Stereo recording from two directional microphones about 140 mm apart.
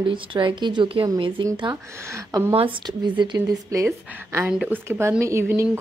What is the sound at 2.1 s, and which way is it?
Speech, 20° right (ahead or behind).